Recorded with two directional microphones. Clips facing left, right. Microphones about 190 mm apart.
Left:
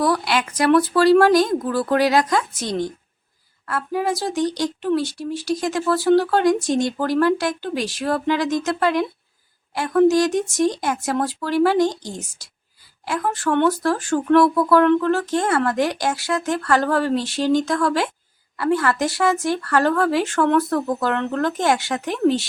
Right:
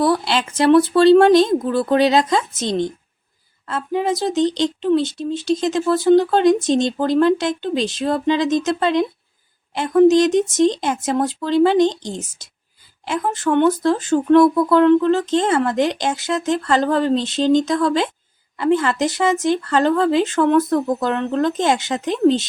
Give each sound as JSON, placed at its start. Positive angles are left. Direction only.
{"t": 0.0, "sound": "speech", "side_deg": -25}